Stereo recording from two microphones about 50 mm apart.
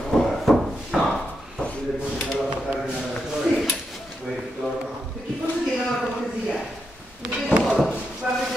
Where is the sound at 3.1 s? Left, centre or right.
Centre.